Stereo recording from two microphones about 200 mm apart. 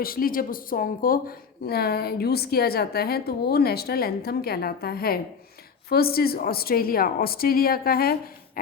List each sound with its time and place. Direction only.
0.0 s speech: 45° left (ahead or behind)